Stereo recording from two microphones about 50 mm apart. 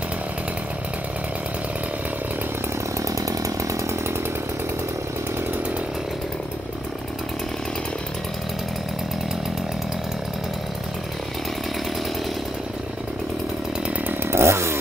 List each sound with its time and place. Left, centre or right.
3.2 s chainsaw: right
14.0 s chainsaw: right